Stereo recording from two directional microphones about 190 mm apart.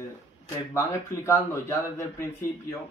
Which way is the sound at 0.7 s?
15° left (ahead or behind).